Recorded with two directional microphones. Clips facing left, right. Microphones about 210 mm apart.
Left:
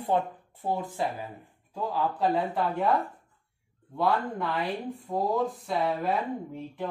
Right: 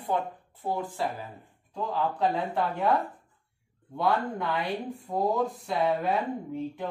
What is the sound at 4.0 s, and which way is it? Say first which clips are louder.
Speech: even; centre (ahead or behind).